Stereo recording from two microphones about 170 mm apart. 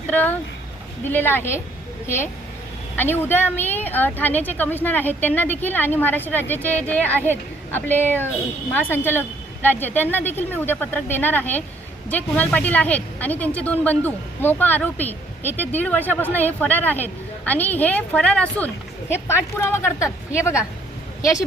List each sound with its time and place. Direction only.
0.1 s a woman's voice: 10° left (ahead or behind)